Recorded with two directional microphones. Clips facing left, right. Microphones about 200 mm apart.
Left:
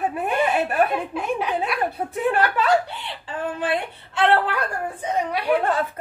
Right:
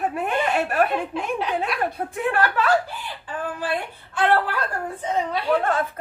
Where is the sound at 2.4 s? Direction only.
20° left (ahead or behind).